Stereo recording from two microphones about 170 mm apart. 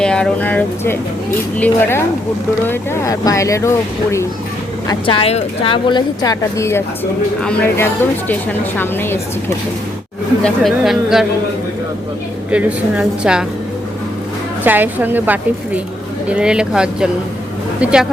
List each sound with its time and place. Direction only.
0.0 s speech: 5° left (ahead or behind)
4.9 s speech: 30° left (ahead or behind); by 9.2 s 15° left (ahead or behind)
10.4 s a woman's voice: centre (ahead or behind)
12.5 s a woman's voice: 5° right (ahead or behind)
14.6 s a woman's voice: 10° right (ahead or behind)